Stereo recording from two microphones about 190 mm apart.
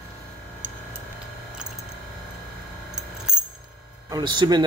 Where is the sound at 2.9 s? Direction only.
5° right (ahead or behind).